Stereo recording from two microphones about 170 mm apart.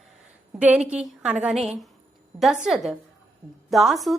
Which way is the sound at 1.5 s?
40° right (ahead or behind).